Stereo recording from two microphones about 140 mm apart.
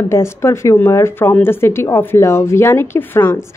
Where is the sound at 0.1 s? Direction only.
20° left (ahead or behind).